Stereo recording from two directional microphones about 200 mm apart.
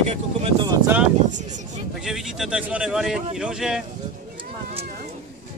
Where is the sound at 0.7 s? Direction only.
10° right (ahead or behind).